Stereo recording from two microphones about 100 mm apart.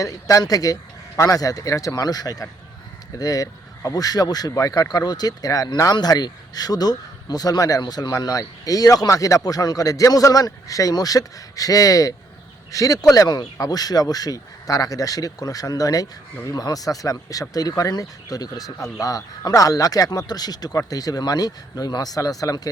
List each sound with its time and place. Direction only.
0.0 s speech: 35° left (ahead or behind)